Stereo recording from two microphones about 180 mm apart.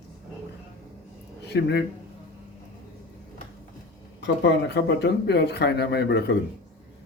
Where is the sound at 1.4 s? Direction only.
70° left (ahead or behind).